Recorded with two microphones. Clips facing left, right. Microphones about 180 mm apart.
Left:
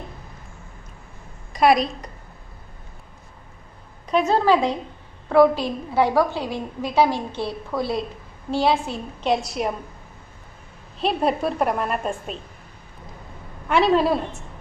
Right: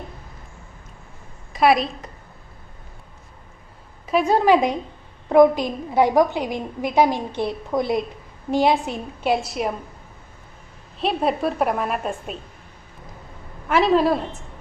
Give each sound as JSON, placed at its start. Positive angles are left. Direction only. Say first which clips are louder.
{"t": 1.5, "sound": "a woman's voice", "louder": "even", "side_deg": 0}
{"t": 4.0, "sound": "a woman's voice", "louder": "right 1 dB", "side_deg": -10}
{"t": 9.3, "sound": "a woman's voice", "louder": "even", "side_deg": 0}
{"t": 11.0, "sound": "a woman's voice", "louder": "even", "side_deg": 0}
{"t": 13.7, "sound": "a woman's voice", "louder": "right 1 dB", "side_deg": 0}